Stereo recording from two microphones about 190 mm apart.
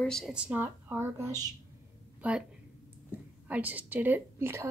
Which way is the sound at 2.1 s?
5° right (ahead or behind).